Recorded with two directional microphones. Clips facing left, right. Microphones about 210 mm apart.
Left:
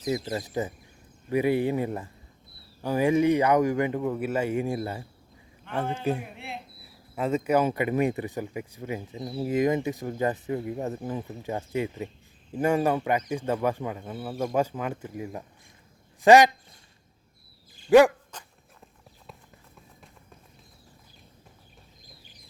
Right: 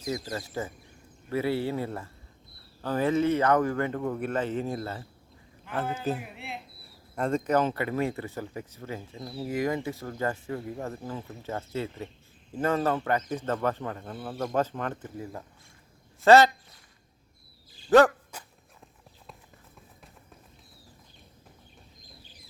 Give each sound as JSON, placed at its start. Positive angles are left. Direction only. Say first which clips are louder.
{"t": 0.0, "sound": "speech", "louder": "left 4 dB", "side_deg": 20}
{"t": 5.8, "sound": "a man's voice", "louder": "left 3 dB", "side_deg": -5}
{"t": 17.8, "sound": "dog", "louder": "left 2 dB", "side_deg": 10}
{"t": 18.3, "sound": "dog", "louder": "even", "side_deg": -10}